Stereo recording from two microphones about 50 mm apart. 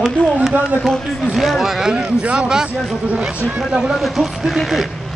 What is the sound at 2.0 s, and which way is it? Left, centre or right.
Speech, right.